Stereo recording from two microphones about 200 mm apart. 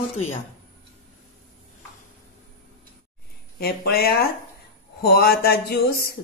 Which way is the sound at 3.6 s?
50° left (ahead or behind).